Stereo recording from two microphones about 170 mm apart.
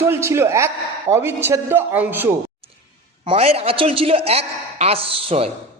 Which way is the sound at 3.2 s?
35° right (ahead or behind).